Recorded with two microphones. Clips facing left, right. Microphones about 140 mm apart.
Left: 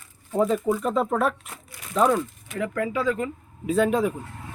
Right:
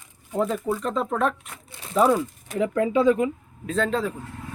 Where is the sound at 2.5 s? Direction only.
20° right (ahead or behind).